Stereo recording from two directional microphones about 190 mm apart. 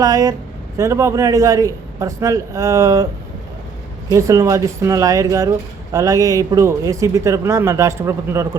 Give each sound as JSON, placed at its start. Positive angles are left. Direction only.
{"t": 0.0, "sound": "speech", "side_deg": -20}
{"t": 4.1, "sound": "speech", "side_deg": -15}